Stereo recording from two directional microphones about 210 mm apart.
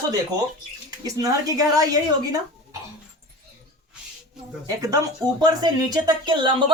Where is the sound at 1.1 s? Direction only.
15° right (ahead or behind).